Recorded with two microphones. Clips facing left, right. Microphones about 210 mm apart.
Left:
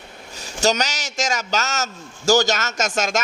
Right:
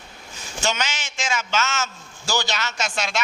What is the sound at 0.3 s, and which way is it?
A man's voice, 40° left (ahead or behind).